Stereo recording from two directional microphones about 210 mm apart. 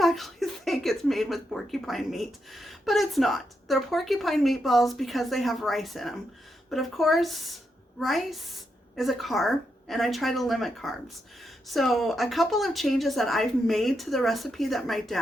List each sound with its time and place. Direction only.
0.0 s a woman's voice: centre (ahead or behind)